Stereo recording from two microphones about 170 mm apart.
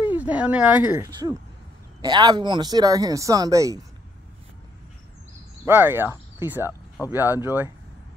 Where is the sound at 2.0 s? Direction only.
25° right (ahead or behind).